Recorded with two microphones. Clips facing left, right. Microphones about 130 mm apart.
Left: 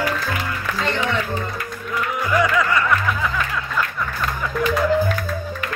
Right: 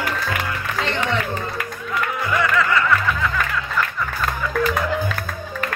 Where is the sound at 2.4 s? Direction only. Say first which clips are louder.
Left 1 dB; 15° left (ahead or behind).